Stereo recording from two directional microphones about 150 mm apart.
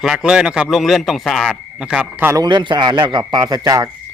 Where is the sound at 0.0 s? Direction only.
5° right (ahead or behind).